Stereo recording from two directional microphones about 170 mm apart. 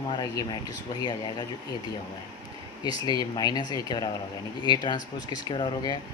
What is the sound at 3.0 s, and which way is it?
Speech, 25° left (ahead or behind).